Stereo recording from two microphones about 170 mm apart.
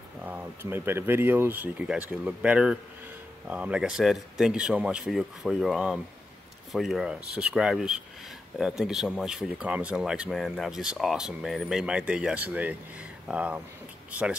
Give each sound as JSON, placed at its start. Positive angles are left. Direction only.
{"t": 0.2, "sound": "speech", "side_deg": -10}